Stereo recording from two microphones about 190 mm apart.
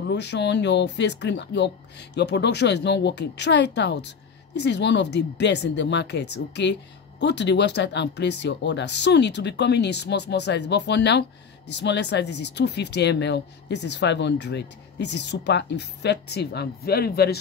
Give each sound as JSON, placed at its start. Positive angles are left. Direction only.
{"t": 0.1, "sound": "speech", "side_deg": 65}